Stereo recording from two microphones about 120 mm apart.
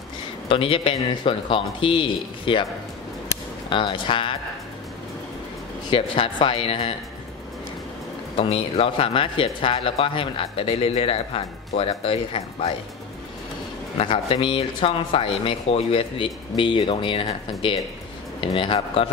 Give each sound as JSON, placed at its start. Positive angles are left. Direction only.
{"t": 0.5, "sound": "speech", "side_deg": 50}
{"t": 3.7, "sound": "speech", "side_deg": 45}
{"t": 5.9, "sound": "speech", "side_deg": 50}
{"t": 8.4, "sound": "speech", "side_deg": 55}
{"t": 13.9, "sound": "speech", "side_deg": 50}